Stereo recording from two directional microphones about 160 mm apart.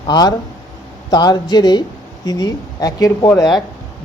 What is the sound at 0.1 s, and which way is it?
Speech, 25° left (ahead or behind).